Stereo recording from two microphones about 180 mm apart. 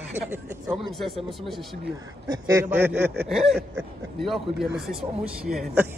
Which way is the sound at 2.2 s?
20° right (ahead or behind).